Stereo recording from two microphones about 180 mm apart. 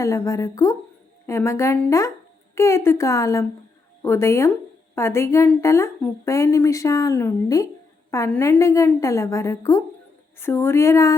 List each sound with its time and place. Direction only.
0.0 s a woman's voice: 15° left (ahead or behind)